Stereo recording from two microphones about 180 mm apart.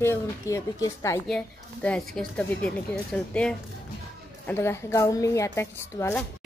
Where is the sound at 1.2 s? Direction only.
5° left (ahead or behind).